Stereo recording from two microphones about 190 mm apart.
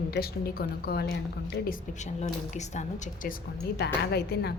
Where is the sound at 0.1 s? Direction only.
55° left (ahead or behind).